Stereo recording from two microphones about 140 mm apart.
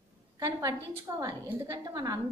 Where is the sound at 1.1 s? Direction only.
20° right (ahead or behind).